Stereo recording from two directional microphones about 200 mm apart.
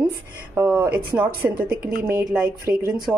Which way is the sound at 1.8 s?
45° right (ahead or behind).